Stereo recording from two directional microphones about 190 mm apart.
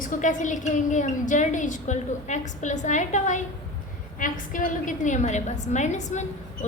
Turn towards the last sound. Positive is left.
turn(degrees=40)  # may be behind; listen again after turning